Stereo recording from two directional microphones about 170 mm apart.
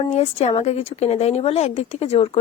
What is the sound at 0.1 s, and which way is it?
A woman's voice, 40° left (ahead or behind).